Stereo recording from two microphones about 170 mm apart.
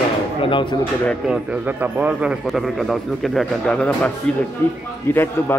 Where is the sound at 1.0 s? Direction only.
5° right (ahead or behind).